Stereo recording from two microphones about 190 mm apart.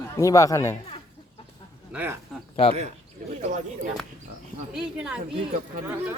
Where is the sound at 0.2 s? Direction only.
15° left (ahead or behind).